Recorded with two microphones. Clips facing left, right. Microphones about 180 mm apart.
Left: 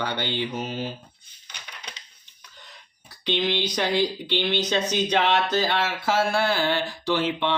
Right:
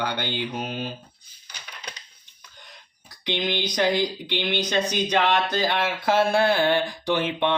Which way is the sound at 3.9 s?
15° right (ahead or behind).